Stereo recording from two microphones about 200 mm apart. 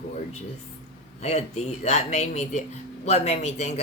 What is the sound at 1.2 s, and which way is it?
Speech, 35° left (ahead or behind).